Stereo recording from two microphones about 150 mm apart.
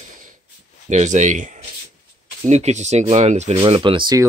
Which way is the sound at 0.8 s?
50° right (ahead or behind).